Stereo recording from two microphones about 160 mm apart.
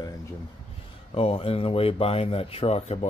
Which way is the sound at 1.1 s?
35° left (ahead or behind).